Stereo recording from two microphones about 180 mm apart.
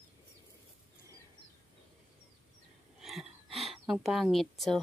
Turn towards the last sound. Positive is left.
turn(degrees=0)  # may be behind; listen again after turning